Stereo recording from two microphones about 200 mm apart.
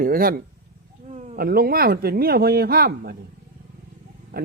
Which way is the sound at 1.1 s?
35° right (ahead or behind).